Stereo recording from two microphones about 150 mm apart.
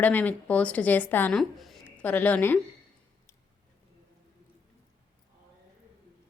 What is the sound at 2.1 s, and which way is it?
Speech, 10° left (ahead or behind).